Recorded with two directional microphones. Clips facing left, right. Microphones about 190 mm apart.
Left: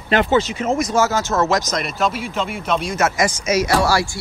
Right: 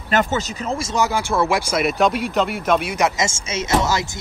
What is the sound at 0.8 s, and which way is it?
Speech, 25° right (ahead or behind).